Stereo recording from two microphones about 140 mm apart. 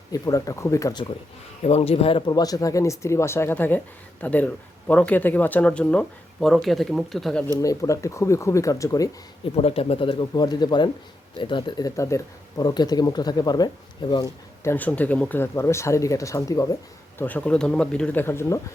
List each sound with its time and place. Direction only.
0.1 s speech: 25° left (ahead or behind)
1.6 s speech: 45° left (ahead or behind); by 7.4 s centre (ahead or behind)
7.6 s speech: 25° left (ahead or behind)
9.6 s speech: 45° left (ahead or behind); by 16.6 s 25° left (ahead or behind)
17.2 s speech: 10° left (ahead or behind)